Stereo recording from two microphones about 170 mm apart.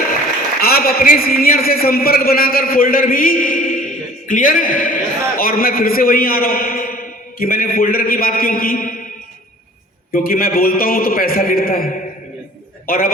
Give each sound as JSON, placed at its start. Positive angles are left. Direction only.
{"t": 0.6, "sound": "a man's voice", "side_deg": 60}
{"t": 10.1, "sound": "a man's voice", "side_deg": 60}